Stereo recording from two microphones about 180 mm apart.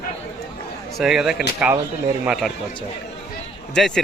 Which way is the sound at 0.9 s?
Centre (ahead or behind).